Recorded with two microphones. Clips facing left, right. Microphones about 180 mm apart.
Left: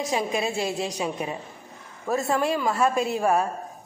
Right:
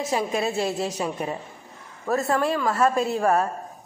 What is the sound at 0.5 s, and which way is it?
Speech, centre (ahead or behind).